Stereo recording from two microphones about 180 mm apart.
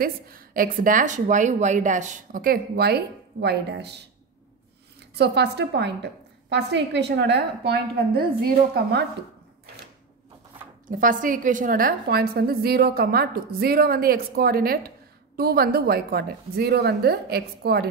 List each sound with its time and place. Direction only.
0.0 s a woman's voice: 55° right (ahead or behind)
5.1 s a woman's voice: 70° right (ahead or behind)
10.9 s a woman's voice: 50° right (ahead or behind)